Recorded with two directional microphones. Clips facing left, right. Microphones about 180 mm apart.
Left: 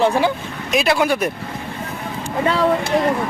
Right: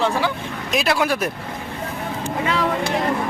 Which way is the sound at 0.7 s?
Centre (ahead or behind).